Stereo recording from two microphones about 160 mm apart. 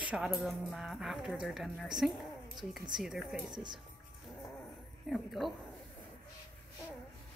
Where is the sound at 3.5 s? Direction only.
25° right (ahead or behind).